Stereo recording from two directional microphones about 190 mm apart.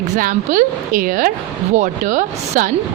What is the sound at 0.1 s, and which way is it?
A woman's voice, 45° right (ahead or behind).